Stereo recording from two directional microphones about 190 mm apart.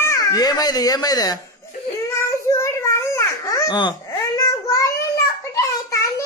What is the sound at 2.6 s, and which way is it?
Baby cry, 15° left (ahead or behind).